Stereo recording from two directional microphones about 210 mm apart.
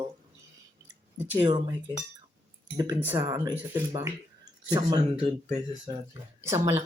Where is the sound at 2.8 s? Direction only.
15° right (ahead or behind).